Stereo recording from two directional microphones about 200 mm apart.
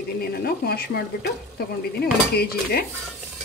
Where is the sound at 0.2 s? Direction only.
50° left (ahead or behind).